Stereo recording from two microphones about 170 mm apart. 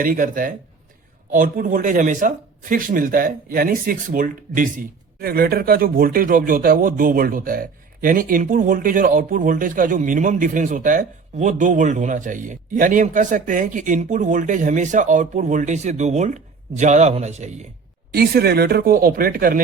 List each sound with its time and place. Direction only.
0.0 s speech: 55° right (ahead or behind)
18.1 s speech: 65° right (ahead or behind)